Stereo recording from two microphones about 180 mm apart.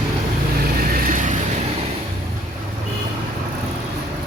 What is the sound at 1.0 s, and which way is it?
Vehicle, 50° right (ahead or behind).